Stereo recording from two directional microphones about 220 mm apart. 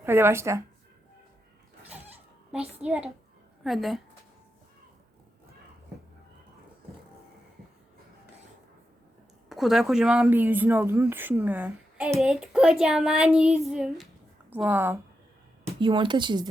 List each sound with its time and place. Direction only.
0.0 s speech: 10° right (ahead or behind)
2.5 s speech: 5° right (ahead or behind)
9.5 s speech: centre (ahead or behind)
15.6 s speech: 20° right (ahead or behind)